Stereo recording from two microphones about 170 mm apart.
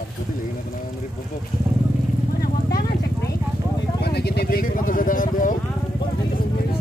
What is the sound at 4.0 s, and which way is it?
Speech, 70° left (ahead or behind).